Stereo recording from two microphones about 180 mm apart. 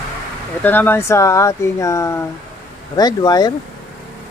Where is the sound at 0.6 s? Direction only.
10° left (ahead or behind).